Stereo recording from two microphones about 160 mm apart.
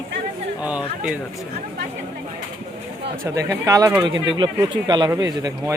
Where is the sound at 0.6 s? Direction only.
10° right (ahead or behind).